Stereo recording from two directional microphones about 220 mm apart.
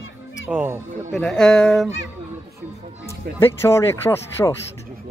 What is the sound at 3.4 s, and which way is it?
Speech, 10° left (ahead or behind).